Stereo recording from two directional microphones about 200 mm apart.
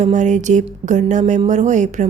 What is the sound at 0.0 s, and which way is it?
Speech, 35° right (ahead or behind).